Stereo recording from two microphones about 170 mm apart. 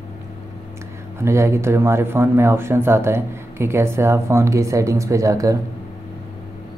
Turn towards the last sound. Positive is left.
turn(degrees=-20)  # may be behind; listen again after turning